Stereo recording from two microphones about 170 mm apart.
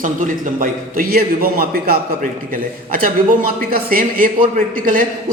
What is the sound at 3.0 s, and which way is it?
A man's voice, 55° right (ahead or behind).